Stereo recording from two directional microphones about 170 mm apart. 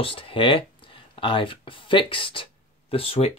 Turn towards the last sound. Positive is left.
turn(degrees=35)  # may be behind; listen again after turning